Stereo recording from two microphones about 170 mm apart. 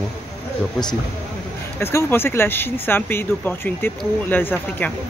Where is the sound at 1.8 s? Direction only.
15° left (ahead or behind).